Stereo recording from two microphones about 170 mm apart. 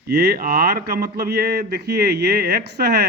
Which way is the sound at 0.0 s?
75° right (ahead or behind).